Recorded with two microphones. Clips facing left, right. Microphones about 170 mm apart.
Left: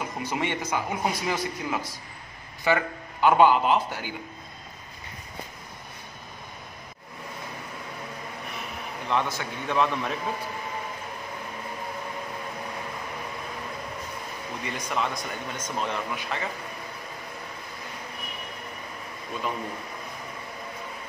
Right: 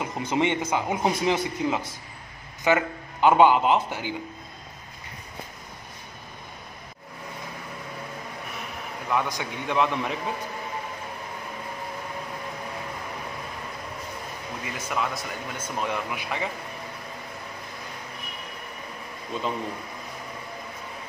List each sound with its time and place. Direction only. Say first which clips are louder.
0.0 s speech: right 4 dB; 20° right (ahead or behind)
9.1 s speech: even; 10° right (ahead or behind)
14.6 s speech: even; 5° right (ahead or behind)